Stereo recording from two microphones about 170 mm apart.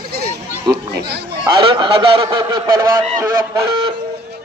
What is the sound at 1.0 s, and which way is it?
Speech, 75° right (ahead or behind).